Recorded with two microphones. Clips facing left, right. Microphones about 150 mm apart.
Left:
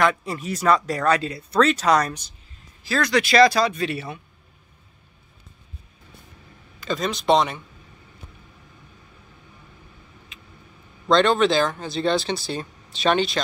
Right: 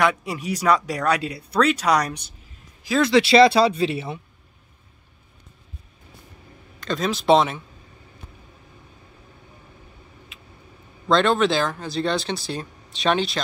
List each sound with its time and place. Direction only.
0.0 s speech: 10° right (ahead or behind)
2.9 s speech: 25° right (ahead or behind)
6.8 s speech: centre (ahead or behind)
10.3 s vehicle: 5° right (ahead or behind)
11.1 s speech: centre (ahead or behind)